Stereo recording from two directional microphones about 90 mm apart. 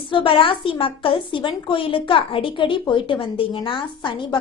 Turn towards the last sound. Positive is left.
turn(degrees=65)  # may be behind; listen again after turning